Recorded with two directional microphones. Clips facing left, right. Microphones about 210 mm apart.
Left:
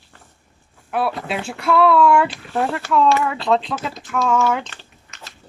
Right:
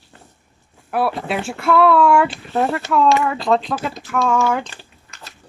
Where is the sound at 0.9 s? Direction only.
5° right (ahead or behind).